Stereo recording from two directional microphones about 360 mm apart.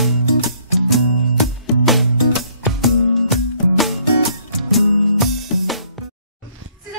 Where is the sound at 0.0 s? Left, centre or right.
Centre.